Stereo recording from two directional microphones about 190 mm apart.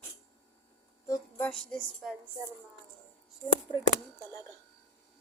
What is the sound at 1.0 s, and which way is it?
Speech, 20° left (ahead or behind).